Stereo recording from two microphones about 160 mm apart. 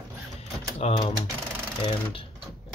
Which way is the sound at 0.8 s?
40° left (ahead or behind).